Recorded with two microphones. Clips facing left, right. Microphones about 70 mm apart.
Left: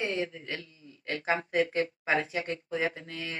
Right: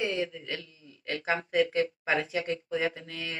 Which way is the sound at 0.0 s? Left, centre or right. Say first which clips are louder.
Right 1 dB; left.